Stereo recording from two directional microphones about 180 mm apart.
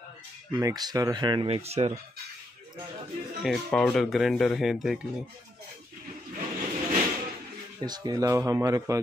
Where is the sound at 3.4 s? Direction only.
Centre (ahead or behind).